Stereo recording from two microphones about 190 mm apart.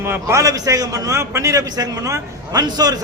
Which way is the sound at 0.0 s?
15° right (ahead or behind).